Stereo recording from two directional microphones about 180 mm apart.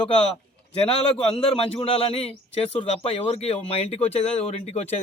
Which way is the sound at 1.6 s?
30° left (ahead or behind).